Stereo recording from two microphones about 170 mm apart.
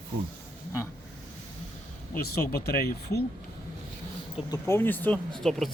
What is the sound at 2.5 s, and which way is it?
Speech, 60° left (ahead or behind).